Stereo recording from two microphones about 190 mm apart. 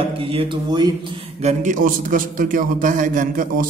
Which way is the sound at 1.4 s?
40° right (ahead or behind).